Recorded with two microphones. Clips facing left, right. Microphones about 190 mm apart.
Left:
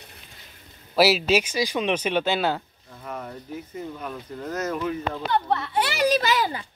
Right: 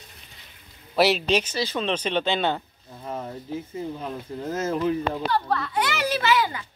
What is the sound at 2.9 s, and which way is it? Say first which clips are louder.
Speech: right 2 dB; 25° right (ahead or behind).